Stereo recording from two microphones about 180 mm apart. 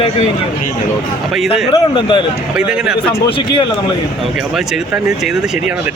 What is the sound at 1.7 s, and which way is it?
Speech, 25° left (ahead or behind).